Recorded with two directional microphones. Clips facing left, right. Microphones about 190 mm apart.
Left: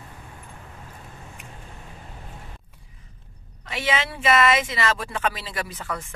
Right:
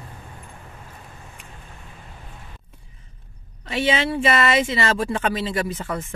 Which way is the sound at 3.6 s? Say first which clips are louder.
Right 5 dB; 30° right (ahead or behind).